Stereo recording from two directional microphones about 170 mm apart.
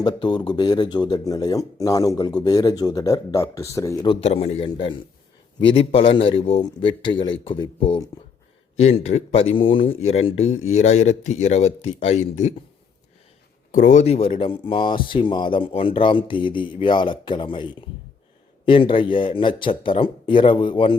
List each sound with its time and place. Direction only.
0.0 s speech: 25° left (ahead or behind)
13.7 s speech: 50° left (ahead or behind); by 21.0 s 30° left (ahead or behind)